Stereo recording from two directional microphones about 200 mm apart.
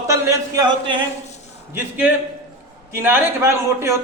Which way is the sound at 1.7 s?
10° right (ahead or behind).